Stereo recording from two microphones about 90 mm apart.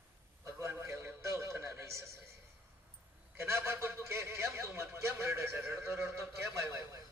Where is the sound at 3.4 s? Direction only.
30° right (ahead or behind).